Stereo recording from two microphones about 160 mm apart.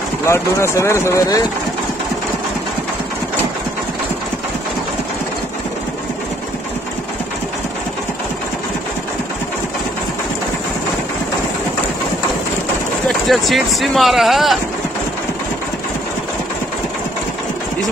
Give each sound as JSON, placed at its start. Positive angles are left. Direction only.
{"t": 0.3, "sound": "speech", "side_deg": 15}
{"t": 13.3, "sound": "speech", "side_deg": 0}